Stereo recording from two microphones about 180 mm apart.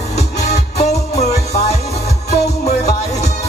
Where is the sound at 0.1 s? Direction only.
40° left (ahead or behind).